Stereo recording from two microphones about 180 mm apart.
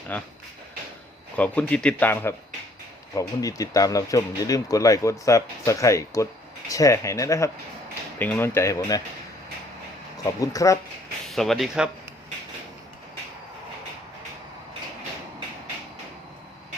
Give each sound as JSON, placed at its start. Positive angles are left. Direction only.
{"t": 0.1, "sound": "speech", "side_deg": 10}
{"t": 1.4, "sound": "speech", "side_deg": 5}
{"t": 10.4, "sound": "speech", "side_deg": 20}
{"t": 11.3, "sound": "speech", "side_deg": 0}